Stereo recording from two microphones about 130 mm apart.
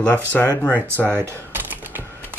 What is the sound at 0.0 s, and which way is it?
Speech, 10° left (ahead or behind).